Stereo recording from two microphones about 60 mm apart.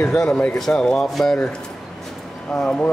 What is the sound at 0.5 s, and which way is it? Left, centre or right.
Speech, centre.